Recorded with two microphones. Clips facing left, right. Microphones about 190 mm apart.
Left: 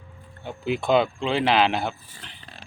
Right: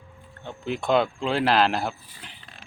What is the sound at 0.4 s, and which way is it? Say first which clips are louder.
Speech: left 2 dB; 5° left (ahead or behind).